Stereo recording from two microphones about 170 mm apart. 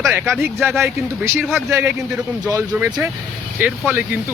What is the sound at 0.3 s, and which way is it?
Speech, 10° right (ahead or behind).